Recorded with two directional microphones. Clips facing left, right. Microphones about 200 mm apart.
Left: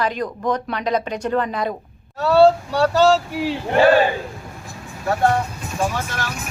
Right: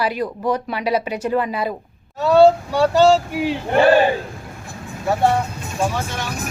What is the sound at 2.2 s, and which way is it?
Speech, 20° right (ahead or behind).